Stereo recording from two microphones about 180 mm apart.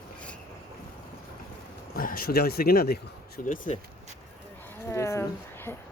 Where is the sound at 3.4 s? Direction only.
45° left (ahead or behind).